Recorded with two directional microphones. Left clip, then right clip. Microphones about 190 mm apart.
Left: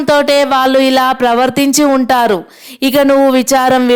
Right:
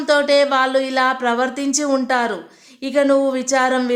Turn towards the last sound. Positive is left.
turn(degrees=45)  # may be behind; listen again after turning